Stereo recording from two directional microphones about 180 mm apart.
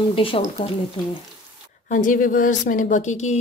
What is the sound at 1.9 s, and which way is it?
A woman's voice, 50° left (ahead or behind).